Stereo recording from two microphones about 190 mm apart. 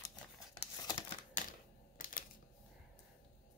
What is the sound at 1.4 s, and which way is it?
Typewriter, 45° left (ahead or behind).